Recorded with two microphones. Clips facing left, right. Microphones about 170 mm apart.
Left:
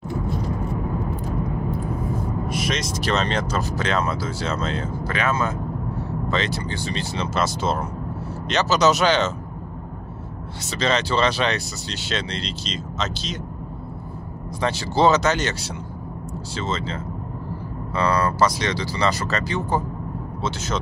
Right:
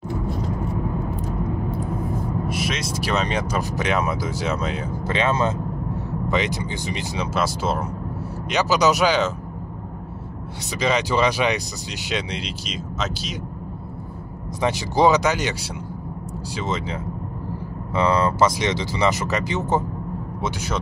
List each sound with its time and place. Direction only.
2.4 s speech: 5° right (ahead or behind); by 5.6 s 25° right (ahead or behind)
6.2 s speech: 15° right (ahead or behind)
10.7 s speech: 15° right (ahead or behind)
14.6 s speech: 15° right (ahead or behind)